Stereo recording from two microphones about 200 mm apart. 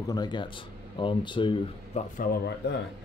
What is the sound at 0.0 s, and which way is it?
Speech, 20° left (ahead or behind).